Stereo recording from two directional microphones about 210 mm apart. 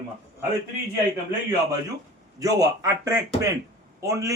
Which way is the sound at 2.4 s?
15° right (ahead or behind).